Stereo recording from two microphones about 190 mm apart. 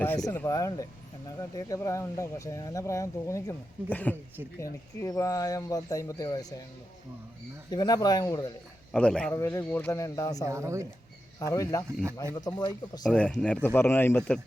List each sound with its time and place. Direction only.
0.0 s speech: 10° left (ahead or behind)
7.7 s speech: 20° left (ahead or behind)
8.9 s a man's voice: 5° left (ahead or behind)
9.3 s speech: 15° left (ahead or behind)
10.4 s speech: 15° right (ahead or behind)
11.3 s speech: 15° left (ahead or behind)
13.1 s a man's voice: 5° left (ahead or behind)